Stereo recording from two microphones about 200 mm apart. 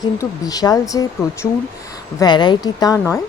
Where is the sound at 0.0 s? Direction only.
20° left (ahead or behind).